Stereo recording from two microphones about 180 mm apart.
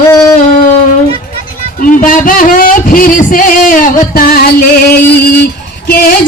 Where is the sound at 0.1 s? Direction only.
20° left (ahead or behind).